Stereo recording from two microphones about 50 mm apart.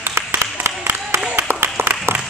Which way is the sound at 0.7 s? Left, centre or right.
Right.